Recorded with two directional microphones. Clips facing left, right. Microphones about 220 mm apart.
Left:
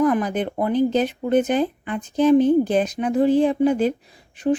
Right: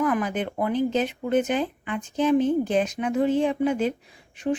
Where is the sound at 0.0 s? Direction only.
35° left (ahead or behind).